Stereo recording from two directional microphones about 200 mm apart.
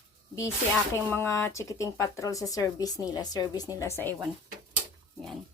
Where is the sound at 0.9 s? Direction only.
10° left (ahead or behind).